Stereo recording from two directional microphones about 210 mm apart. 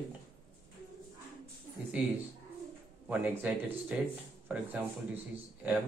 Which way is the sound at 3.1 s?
5° right (ahead or behind).